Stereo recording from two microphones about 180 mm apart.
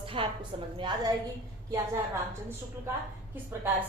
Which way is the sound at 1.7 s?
15° right (ahead or behind).